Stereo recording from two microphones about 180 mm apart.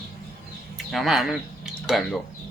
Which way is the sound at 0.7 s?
Centre (ahead or behind).